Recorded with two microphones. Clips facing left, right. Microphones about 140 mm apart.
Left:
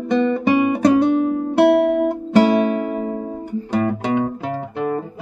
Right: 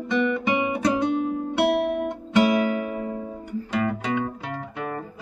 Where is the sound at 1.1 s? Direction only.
55° left (ahead or behind).